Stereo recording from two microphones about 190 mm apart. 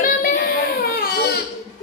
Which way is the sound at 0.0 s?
50° left (ahead or behind).